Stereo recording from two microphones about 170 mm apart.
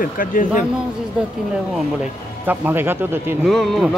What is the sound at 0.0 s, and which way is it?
Speech, 55° left (ahead or behind).